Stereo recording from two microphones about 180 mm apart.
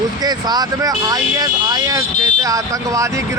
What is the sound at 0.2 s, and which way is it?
Speech, 20° right (ahead or behind).